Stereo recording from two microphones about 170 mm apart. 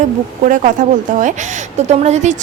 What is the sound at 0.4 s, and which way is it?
A woman's voice, 50° right (ahead or behind).